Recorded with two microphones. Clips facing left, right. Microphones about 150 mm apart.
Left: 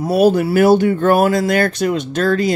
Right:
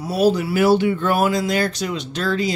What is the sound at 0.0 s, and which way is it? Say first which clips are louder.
Speech: left 5 dB; 55° left (ahead or behind).